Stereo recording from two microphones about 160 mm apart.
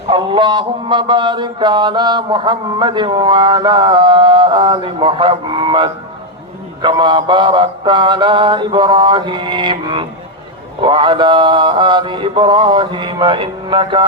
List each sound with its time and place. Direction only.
0.1 s mantra: 30° right (ahead or behind)